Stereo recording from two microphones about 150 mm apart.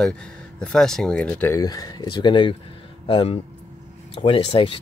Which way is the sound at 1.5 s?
25° left (ahead or behind).